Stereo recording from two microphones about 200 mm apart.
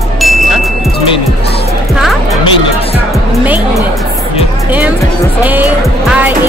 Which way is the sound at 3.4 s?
5° right (ahead or behind).